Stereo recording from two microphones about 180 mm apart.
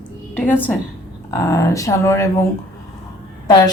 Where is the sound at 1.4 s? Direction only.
15° left (ahead or behind).